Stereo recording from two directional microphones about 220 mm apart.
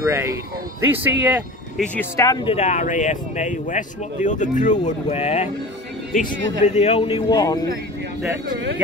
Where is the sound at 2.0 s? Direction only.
15° left (ahead or behind).